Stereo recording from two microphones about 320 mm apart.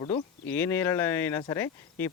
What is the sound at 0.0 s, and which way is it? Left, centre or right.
Speech, centre.